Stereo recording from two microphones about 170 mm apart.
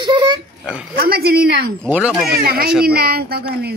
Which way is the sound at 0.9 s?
60° right (ahead or behind).